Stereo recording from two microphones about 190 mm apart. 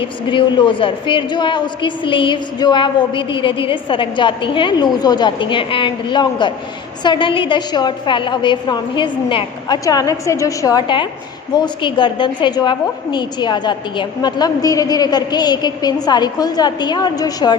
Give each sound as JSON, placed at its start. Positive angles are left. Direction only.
{"t": 0.0, "sound": "a woman's voice", "side_deg": 25}